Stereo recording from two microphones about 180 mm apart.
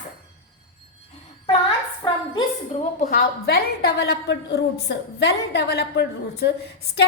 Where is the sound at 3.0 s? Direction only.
50° left (ahead or behind).